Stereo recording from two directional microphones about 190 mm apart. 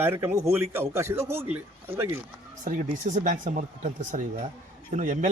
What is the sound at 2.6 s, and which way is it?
Speech, 45° right (ahead or behind).